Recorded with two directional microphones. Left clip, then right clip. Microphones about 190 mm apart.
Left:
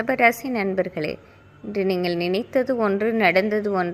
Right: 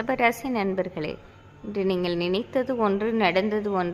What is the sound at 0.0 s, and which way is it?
A woman's voice, 10° left (ahead or behind).